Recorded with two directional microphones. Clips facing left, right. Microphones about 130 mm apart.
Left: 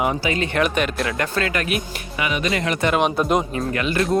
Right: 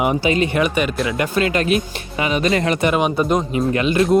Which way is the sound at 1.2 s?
20° right (ahead or behind).